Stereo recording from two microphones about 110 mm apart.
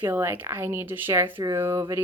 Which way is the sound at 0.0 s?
20° right (ahead or behind).